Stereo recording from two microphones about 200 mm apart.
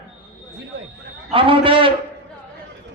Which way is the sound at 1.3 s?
25° right (ahead or behind).